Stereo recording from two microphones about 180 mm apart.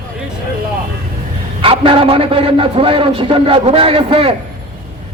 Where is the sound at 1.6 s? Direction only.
30° right (ahead or behind).